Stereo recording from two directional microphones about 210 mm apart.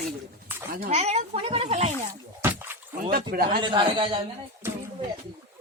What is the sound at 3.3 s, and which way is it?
Speech, 45° right (ahead or behind).